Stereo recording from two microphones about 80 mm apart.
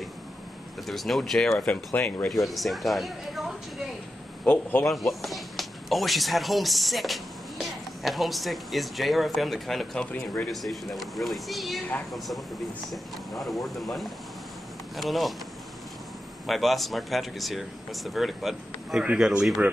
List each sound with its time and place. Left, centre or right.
0.8 s speech: centre
2.0 s speech: left
2.2 s speech: centre
4.8 s speech: centre
10.1 s speech: left
10.5 s speech: centre
12.9 s speech: centre
16.4 s speech: centre